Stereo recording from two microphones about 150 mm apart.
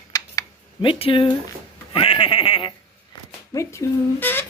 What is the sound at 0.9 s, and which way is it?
Speech, 35° left (ahead or behind).